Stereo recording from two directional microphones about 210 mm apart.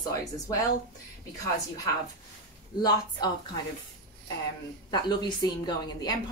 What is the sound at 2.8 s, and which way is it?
Speech, 20° left (ahead or behind).